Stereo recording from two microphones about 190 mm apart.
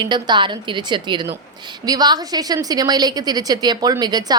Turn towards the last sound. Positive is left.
turn(degrees=-20)  # may be behind; listen again after turning